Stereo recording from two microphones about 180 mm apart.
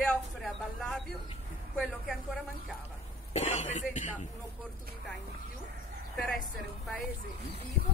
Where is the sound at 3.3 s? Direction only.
40° left (ahead or behind).